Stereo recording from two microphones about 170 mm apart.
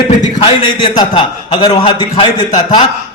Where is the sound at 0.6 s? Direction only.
25° left (ahead or behind).